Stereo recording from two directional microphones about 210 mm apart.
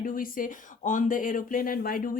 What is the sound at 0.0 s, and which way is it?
A woman's voice, 40° left (ahead or behind).